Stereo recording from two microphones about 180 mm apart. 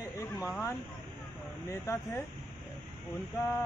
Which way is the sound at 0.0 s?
10° left (ahead or behind).